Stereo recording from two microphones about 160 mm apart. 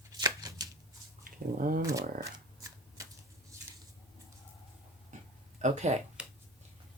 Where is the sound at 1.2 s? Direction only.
60° right (ahead or behind).